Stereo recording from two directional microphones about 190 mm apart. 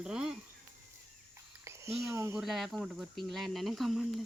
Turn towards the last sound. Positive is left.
turn(degrees=0)  # may be behind; listen again after turning